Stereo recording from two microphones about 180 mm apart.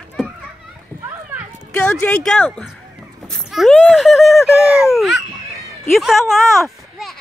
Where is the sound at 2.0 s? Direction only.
5° left (ahead or behind).